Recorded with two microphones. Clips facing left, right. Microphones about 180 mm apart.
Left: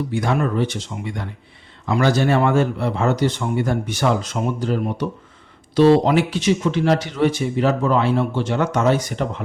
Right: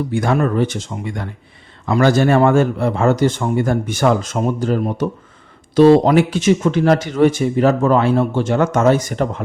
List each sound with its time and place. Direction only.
0.1 s speech: 50° right (ahead or behind)